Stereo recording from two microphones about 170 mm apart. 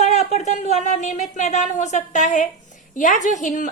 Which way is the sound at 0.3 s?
40° left (ahead or behind).